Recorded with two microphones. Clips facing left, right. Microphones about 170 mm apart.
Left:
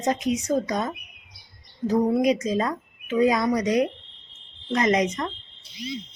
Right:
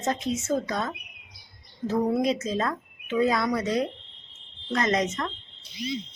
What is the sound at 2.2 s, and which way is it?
Speech, 15° left (ahead or behind).